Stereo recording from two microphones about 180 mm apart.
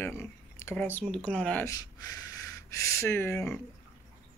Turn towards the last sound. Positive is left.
turn(degrees=10)  # may be behind; listen again after turning